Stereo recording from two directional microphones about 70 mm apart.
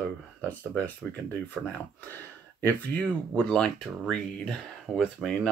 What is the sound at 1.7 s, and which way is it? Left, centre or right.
Speech, left.